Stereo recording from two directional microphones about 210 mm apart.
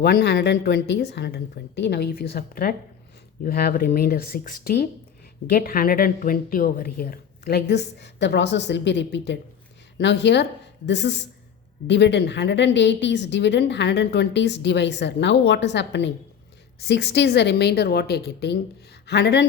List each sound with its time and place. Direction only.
0.0 s a woman's voice: 50° left (ahead or behind)